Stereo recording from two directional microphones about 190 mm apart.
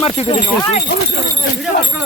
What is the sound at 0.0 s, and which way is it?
Speech, 30° left (ahead or behind).